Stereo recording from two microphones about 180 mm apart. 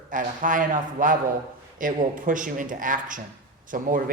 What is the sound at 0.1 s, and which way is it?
Speech, 45° right (ahead or behind).